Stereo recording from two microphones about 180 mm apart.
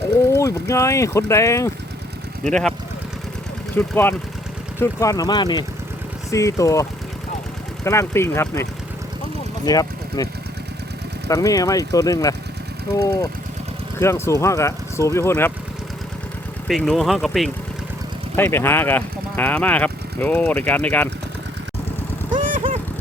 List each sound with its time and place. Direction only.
0.3 s speech: 15° left (ahead or behind)
2.4 s speech: 5° left (ahead or behind)
3.8 s speech: 10° left (ahead or behind)
7.9 s speech: 15° left (ahead or behind)
9.6 s speech: 20° left (ahead or behind)
11.3 s speech: 20° left (ahead or behind)
16.6 s speech: centre (ahead or behind)
18.3 s speech: 10° left (ahead or behind)
22.4 s vehicle: 50° right (ahead or behind)